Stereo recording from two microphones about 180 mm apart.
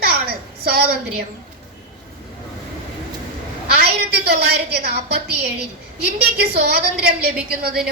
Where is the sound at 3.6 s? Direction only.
60° right (ahead or behind).